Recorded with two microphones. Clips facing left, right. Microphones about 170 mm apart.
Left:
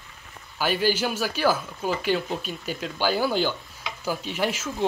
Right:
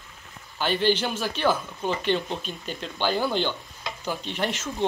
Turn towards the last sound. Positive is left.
turn(degrees=5)  # may be behind; listen again after turning